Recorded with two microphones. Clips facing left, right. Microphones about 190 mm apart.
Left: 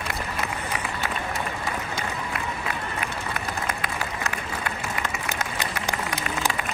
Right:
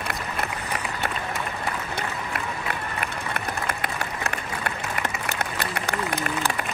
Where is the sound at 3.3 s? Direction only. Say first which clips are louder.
Right 2 dB; 60° right (ahead or behind).